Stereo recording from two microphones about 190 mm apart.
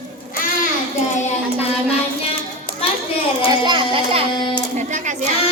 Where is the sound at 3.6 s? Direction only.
25° right (ahead or behind).